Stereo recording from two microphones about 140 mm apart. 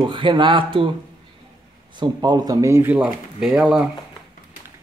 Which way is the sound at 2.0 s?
30° right (ahead or behind).